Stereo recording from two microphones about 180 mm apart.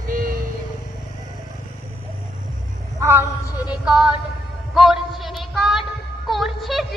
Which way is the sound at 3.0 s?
15° right (ahead or behind).